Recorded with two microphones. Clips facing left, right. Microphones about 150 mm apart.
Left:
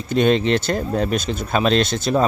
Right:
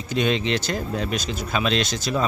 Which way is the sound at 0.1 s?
45° left (ahead or behind).